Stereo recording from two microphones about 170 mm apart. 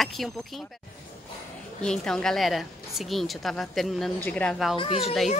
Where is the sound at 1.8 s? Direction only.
5° left (ahead or behind).